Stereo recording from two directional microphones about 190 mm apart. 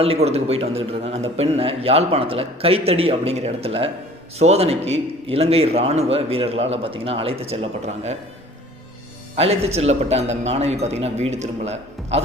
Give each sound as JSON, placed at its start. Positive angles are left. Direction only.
{"t": 0.0, "sound": "a man's voice", "side_deg": -30}
{"t": 9.3, "sound": "a man's voice", "side_deg": -35}